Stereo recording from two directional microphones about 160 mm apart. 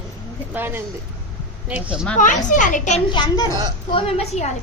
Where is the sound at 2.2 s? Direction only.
55° left (ahead or behind).